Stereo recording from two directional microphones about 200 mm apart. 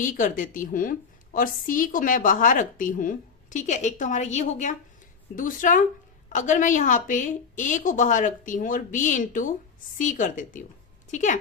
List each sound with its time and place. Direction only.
0.0 s a woman's voice: 40° left (ahead or behind)